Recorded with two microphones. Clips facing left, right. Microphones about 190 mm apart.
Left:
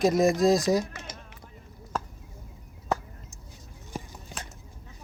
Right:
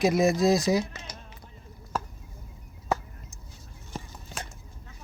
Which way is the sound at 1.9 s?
5° right (ahead or behind).